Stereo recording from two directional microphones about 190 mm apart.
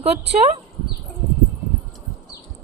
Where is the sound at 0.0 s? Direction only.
35° right (ahead or behind).